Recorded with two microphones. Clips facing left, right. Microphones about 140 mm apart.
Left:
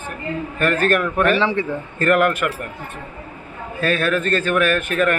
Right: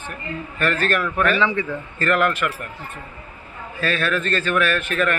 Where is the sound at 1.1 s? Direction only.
35° left (ahead or behind).